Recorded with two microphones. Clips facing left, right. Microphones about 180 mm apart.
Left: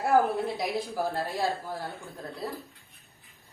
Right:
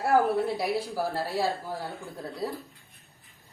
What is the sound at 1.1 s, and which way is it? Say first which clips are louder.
Speech: right 1 dB; 10° right (ahead or behind).